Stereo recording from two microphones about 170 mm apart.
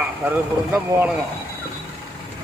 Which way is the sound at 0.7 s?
10° right (ahead or behind).